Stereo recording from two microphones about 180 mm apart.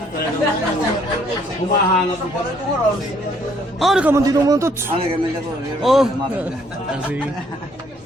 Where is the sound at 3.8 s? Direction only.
5° right (ahead or behind).